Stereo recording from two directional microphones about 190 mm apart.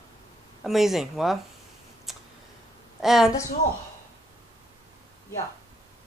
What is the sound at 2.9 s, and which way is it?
Speech, centre (ahead or behind).